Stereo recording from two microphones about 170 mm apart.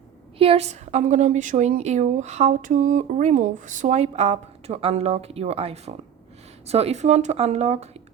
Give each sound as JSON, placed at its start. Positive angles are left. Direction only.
{"t": 0.3, "sound": "a woman's voice", "side_deg": -35}